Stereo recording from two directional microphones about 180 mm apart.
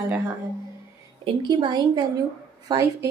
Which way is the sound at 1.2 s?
25° right (ahead or behind).